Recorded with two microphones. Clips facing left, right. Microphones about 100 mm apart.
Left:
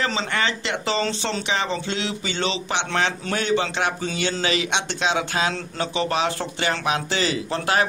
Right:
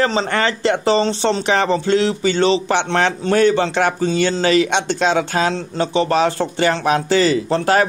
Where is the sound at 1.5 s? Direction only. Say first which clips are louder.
Right 10 dB; 50° right (ahead or behind).